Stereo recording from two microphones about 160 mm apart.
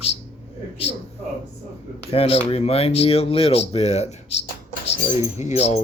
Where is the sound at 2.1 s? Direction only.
35° left (ahead or behind).